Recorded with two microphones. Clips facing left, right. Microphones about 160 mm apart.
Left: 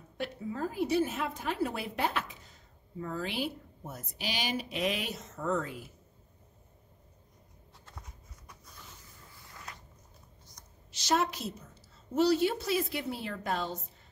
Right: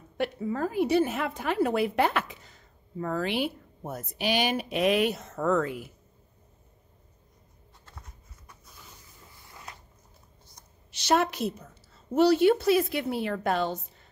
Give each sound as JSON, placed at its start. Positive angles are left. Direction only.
{"t": 0.2, "sound": "a woman's voice", "side_deg": -70}
{"t": 10.9, "sound": "a woman's voice", "side_deg": -65}